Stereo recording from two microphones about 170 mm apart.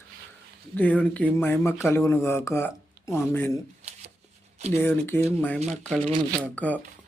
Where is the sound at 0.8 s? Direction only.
10° left (ahead or behind).